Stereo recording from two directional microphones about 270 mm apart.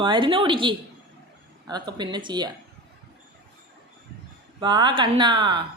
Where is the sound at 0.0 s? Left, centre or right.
Centre.